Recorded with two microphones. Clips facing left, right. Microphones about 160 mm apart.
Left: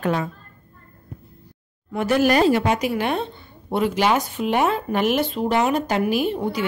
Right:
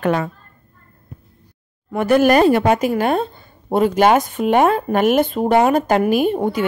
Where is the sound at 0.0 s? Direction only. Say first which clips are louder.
Right 4 dB; 65° right (ahead or behind).